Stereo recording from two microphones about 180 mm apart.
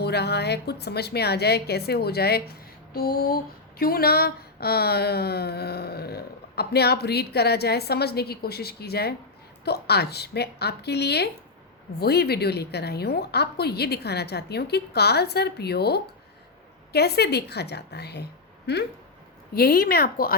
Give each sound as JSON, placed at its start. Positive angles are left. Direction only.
{"t": 0.0, "sound": "speech", "side_deg": 65}